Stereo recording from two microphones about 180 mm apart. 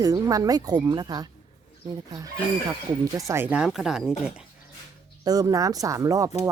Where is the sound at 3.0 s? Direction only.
20° right (ahead or behind).